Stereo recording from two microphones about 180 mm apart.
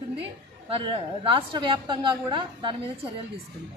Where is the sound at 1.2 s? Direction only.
30° right (ahead or behind).